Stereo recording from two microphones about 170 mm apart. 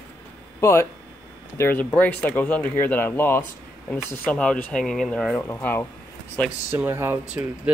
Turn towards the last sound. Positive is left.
turn(degrees=-10)  # may be behind; listen again after turning